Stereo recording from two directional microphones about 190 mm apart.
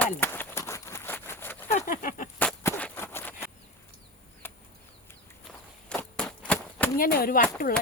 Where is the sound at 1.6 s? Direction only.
45° left (ahead or behind).